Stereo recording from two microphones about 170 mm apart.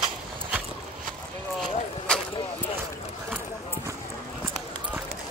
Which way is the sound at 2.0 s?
5° left (ahead or behind).